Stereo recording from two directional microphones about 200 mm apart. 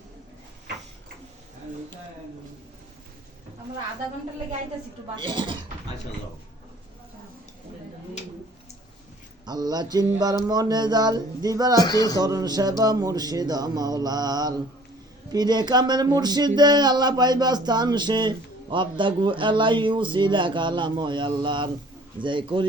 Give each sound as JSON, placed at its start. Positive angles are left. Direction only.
{"t": 5.1, "sound": "speech", "side_deg": -25}
{"t": 9.5, "sound": "speech", "side_deg": -20}
{"t": 11.8, "sound": "speech", "side_deg": 20}
{"t": 12.2, "sound": "speech", "side_deg": -20}